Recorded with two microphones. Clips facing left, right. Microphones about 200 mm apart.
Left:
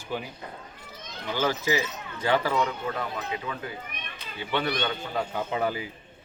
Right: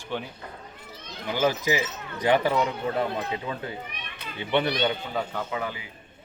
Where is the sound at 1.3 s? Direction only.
15° right (ahead or behind).